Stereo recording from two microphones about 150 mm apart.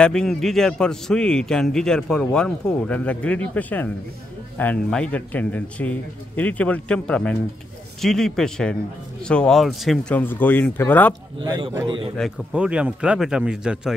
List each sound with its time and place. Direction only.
0.0 s a man's voice: 5° left (ahead or behind)
11.4 s a man's voice: 25° right (ahead or behind)
12.2 s a man's voice: 5° left (ahead or behind)
12.5 s speech: 10° right (ahead or behind)